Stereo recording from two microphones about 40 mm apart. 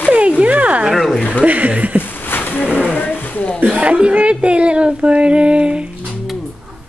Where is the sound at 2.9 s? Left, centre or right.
Left.